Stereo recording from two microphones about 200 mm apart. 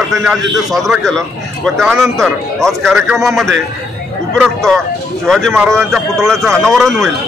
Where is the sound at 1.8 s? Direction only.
10° right (ahead or behind).